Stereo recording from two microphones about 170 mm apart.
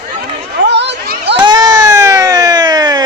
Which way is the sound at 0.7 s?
90° right.